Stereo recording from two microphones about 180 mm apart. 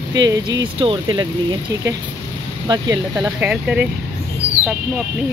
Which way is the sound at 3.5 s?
5° right (ahead or behind).